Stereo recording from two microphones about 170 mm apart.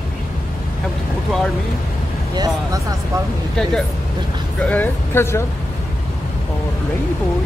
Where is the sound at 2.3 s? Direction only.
20° right (ahead or behind).